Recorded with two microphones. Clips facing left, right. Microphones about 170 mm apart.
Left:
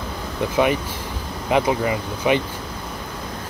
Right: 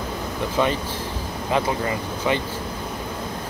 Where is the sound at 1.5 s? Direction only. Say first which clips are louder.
Left 4 dB; 20° left (ahead or behind).